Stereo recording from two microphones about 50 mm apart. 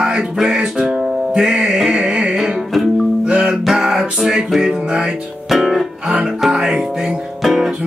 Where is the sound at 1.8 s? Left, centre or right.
Centre.